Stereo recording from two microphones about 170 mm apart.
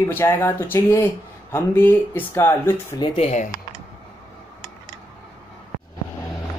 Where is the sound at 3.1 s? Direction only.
40° left (ahead or behind).